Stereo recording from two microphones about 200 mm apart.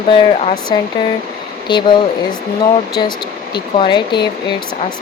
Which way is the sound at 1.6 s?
20° left (ahead or behind).